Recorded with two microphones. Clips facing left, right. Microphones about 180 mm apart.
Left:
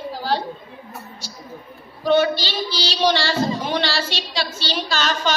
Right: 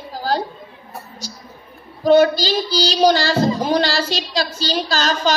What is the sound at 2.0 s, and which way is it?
A woman's voice, 40° right (ahead or behind).